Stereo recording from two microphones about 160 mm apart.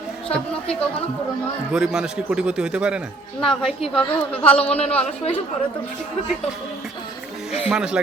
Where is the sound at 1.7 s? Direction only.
5° right (ahead or behind).